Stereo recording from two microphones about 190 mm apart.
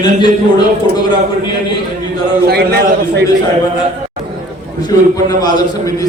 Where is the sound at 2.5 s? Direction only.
55° right (ahead or behind).